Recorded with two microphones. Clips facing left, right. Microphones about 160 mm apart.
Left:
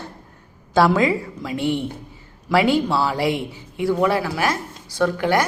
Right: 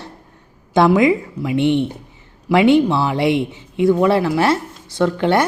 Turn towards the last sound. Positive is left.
turn(degrees=-25)  # may be behind; listen again after turning